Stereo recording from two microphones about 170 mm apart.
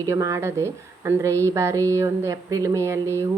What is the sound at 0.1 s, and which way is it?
A woman's voice, 20° right (ahead or behind).